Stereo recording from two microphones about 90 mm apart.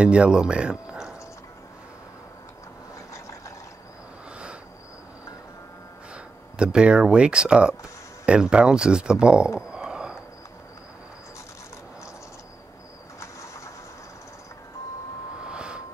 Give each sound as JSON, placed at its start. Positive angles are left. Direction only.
{"t": 0.0, "sound": "speech", "side_deg": -10}
{"t": 3.1, "sound": "vehicle", "side_deg": 35}
{"t": 6.1, "sound": "speech", "side_deg": -10}
{"t": 9.6, "sound": "a sound", "side_deg": -10}
{"t": 13.2, "sound": "bird", "side_deg": 35}
{"t": 15.4, "sound": "a sound", "side_deg": -10}